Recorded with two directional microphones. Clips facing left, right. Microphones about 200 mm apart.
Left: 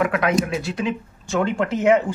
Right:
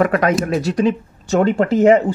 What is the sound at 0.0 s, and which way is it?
Speech, 40° right (ahead or behind).